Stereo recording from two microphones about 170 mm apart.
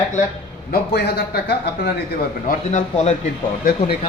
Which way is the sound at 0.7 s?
75° left (ahead or behind).